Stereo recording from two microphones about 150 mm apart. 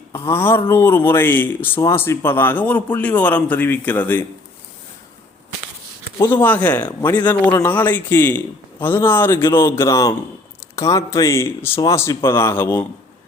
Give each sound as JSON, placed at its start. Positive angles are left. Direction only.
{"t": 0.1, "sound": "speech", "side_deg": 15}
{"t": 6.1, "sound": "speech", "side_deg": 15}